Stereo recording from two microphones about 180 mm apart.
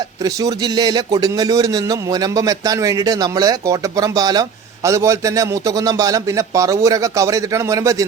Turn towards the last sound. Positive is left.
turn(degrees=-20)  # may be behind; listen again after turning